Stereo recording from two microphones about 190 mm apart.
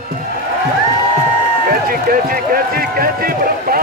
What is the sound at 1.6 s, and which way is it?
Speech, 50° right (ahead or behind).